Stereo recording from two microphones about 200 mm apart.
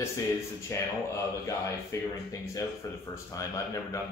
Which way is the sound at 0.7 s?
15° left (ahead or behind).